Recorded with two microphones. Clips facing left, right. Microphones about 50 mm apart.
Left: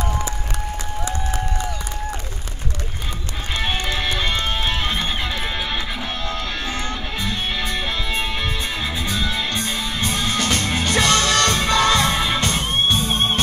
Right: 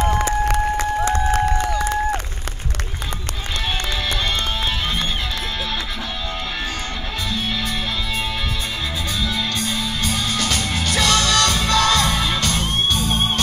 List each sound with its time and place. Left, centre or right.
1.0 s applause: right
4.2 s music: centre
9.2 s music: centre